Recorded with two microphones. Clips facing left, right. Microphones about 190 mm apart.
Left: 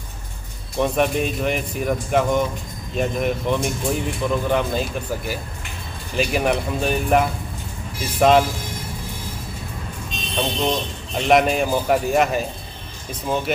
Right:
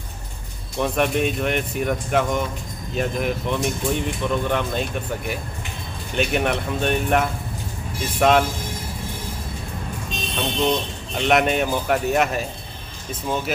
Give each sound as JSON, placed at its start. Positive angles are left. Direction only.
{"t": 0.7, "sound": "speech", "side_deg": 0}
{"t": 10.2, "sound": "speech", "side_deg": 0}